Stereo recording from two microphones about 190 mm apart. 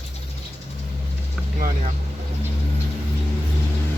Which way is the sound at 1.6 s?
50° right (ahead or behind).